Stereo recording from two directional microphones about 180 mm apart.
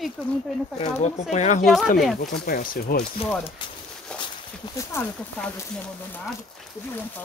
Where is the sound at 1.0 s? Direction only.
40° left (ahead or behind).